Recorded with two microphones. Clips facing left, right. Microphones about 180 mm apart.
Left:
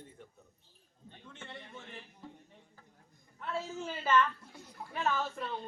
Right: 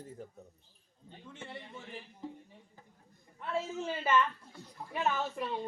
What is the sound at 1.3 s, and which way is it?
Speech, 10° right (ahead or behind).